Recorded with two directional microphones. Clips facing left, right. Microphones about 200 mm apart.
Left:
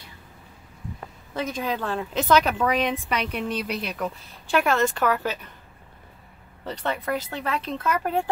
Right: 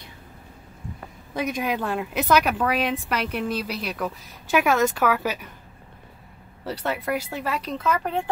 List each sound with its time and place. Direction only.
1.3 s a woman's voice: 10° right (ahead or behind)
6.6 s a woman's voice: 5° right (ahead or behind)